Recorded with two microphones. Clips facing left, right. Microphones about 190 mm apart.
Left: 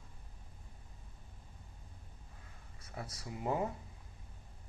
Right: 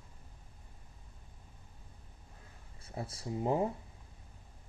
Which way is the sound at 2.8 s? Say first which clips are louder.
Right 4 dB; 25° right (ahead or behind).